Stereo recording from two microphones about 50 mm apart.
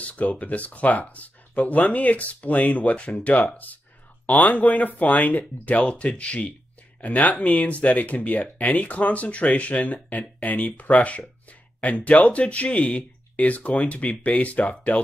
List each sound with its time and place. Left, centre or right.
0.0 s speech: left